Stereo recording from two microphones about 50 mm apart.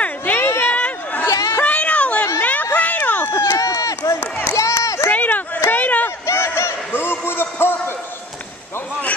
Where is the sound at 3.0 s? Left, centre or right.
Left.